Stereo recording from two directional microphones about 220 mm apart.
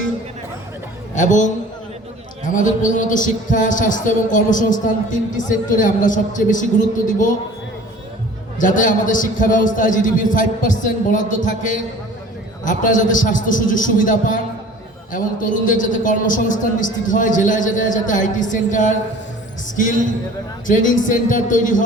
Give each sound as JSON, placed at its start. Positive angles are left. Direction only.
{"t": 1.1, "sound": "a man's voice", "side_deg": 35}
{"t": 8.5, "sound": "a man's voice", "side_deg": 35}